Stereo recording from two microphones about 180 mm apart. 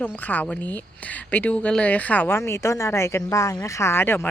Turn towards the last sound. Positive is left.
turn(degrees=10)  # may be behind; listen again after turning